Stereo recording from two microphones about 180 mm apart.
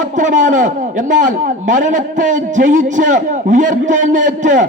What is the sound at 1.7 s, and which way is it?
A man's voice, 45° right (ahead or behind).